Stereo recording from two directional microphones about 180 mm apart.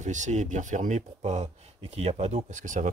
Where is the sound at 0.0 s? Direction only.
40° right (ahead or behind).